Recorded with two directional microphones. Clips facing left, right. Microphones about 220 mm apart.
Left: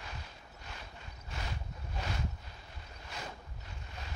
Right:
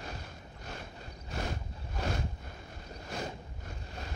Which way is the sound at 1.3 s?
45° right (ahead or behind).